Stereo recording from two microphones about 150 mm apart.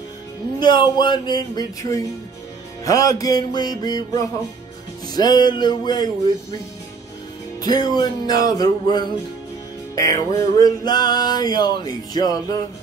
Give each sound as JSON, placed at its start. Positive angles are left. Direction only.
{"t": 0.6, "sound": "music", "side_deg": 30}
{"t": 5.1, "sound": "music", "side_deg": 25}
{"t": 7.6, "sound": "music", "side_deg": 25}